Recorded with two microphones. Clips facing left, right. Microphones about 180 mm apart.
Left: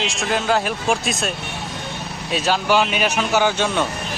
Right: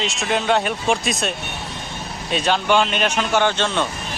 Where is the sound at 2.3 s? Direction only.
5° left (ahead or behind).